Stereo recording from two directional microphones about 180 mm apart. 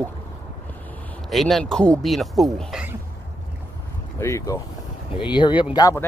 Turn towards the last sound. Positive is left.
turn(degrees=20)  # may be behind; listen again after turning